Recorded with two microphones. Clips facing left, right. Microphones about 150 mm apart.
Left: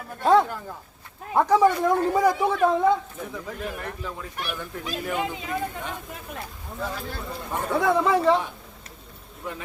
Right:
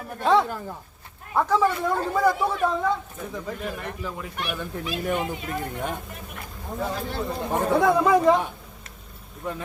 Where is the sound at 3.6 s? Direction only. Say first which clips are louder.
Right 1 dB; centre (ahead or behind).